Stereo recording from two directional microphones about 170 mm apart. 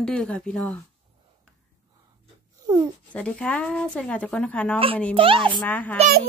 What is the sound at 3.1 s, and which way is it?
Speech, 5° left (ahead or behind).